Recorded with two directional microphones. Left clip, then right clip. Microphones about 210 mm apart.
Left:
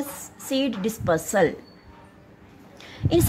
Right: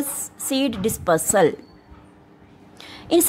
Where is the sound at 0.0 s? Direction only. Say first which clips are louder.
Right 4 dB; 20° right (ahead or behind).